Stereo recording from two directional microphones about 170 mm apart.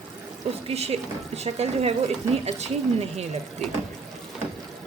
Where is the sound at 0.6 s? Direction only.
40° right (ahead or behind).